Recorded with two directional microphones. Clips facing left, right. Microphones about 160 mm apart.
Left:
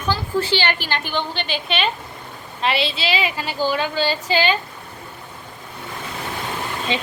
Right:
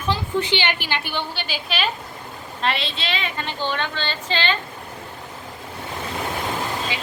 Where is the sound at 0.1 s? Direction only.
15° right (ahead or behind).